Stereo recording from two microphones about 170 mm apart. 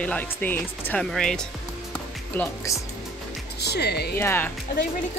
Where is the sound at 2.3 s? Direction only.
15° left (ahead or behind).